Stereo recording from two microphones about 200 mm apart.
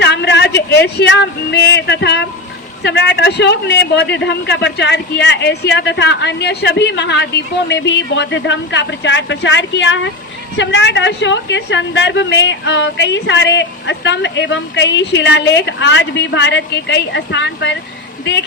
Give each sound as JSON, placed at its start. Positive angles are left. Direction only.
{"t": 0.0, "sound": "a woman's voice", "side_deg": 60}